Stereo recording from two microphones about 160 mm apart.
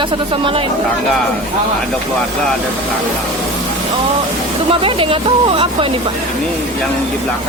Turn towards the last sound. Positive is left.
turn(degrees=-35)  # may be behind; listen again after turning